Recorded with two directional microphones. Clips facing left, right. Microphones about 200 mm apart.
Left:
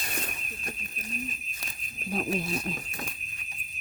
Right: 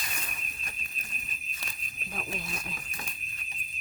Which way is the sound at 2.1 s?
35° left (ahead or behind).